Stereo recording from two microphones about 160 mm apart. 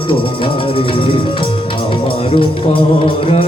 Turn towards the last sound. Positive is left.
turn(degrees=35)  # may be behind; listen again after turning